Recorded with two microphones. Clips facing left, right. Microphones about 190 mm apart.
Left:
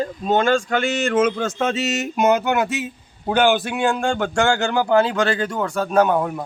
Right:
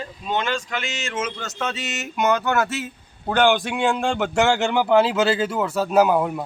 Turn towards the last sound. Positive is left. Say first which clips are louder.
# even
turn(degrees=-5)  # may be behind; listen again after turning